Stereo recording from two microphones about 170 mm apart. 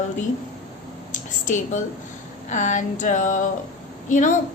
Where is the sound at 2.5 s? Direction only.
45° left (ahead or behind).